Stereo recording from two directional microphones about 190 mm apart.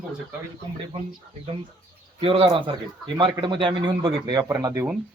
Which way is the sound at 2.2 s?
30° right (ahead or behind).